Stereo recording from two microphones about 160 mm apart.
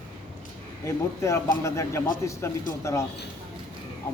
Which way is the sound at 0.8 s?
20° left (ahead or behind).